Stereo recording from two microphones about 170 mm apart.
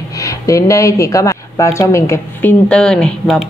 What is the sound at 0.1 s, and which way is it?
Speech, 20° left (ahead or behind).